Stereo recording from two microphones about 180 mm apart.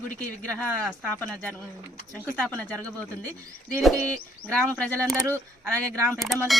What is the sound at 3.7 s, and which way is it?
A man's voice, 10° left (ahead or behind).